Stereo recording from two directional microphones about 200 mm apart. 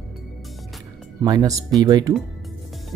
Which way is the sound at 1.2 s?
15° right (ahead or behind).